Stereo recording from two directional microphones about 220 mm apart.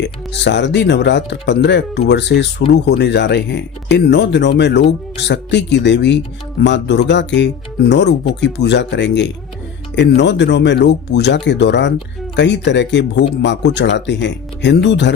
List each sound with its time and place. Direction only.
0.0 s speech: 55° left (ahead or behind)